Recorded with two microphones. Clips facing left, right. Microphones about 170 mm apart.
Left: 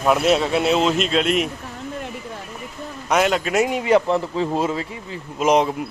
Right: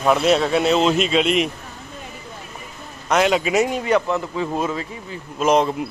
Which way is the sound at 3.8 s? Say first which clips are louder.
Left 2 dB; 25° left (ahead or behind).